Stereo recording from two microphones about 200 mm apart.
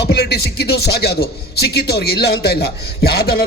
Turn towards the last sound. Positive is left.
turn(degrees=55)  # may be behind; listen again after turning